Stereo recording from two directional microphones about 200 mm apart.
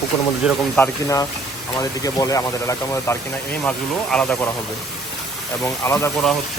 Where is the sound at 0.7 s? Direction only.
15° left (ahead or behind).